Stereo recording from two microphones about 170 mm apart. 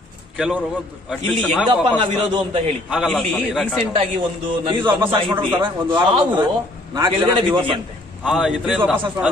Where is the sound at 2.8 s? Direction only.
5° right (ahead or behind).